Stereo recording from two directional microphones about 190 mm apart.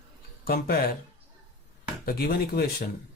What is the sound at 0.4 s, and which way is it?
Speech, 55° left (ahead or behind).